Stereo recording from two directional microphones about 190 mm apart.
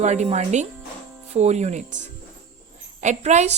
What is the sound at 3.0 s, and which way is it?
Speech, 40° right (ahead or behind).